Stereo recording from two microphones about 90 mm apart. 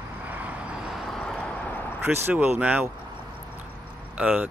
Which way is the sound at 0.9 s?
5° left (ahead or behind).